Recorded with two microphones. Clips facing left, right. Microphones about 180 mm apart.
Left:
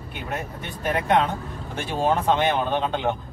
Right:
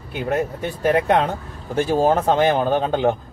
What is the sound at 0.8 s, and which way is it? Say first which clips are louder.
Speech: right 4 dB; 45° right (ahead or behind).